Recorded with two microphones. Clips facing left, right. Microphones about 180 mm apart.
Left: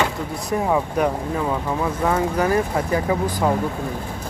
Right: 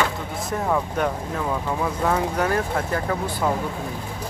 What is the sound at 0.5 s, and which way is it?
Speech, 15° left (ahead or behind).